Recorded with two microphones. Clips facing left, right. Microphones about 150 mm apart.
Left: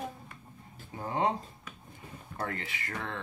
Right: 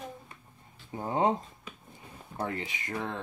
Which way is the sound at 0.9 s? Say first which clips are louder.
Right 3 dB; 25° right (ahead or behind).